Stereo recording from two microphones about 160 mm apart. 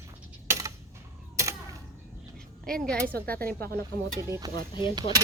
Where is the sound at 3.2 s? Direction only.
70° right (ahead or behind).